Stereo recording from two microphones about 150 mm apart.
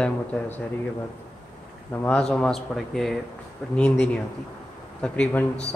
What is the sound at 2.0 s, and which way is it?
A man's voice, 5° left (ahead or behind).